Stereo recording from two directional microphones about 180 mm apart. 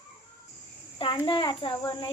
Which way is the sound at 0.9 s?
30° left (ahead or behind).